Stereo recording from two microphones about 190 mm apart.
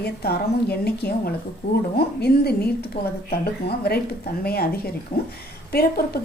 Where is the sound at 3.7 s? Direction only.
55° left (ahead or behind).